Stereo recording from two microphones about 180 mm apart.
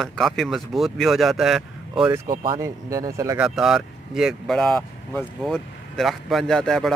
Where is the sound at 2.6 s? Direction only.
20° right (ahead or behind).